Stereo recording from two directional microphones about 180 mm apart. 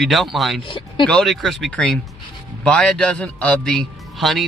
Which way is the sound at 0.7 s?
30° left (ahead or behind).